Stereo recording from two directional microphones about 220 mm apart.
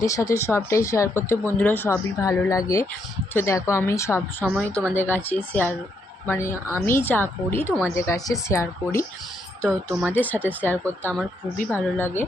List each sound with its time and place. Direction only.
0.0 s speech: 15° left (ahead or behind)